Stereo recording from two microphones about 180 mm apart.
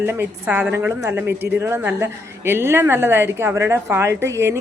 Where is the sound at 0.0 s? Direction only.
15° right (ahead or behind).